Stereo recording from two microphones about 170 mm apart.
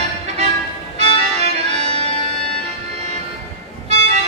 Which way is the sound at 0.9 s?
40° right (ahead or behind).